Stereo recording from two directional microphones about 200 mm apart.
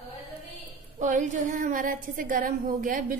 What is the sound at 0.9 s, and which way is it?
A woman's voice, 40° right (ahead or behind).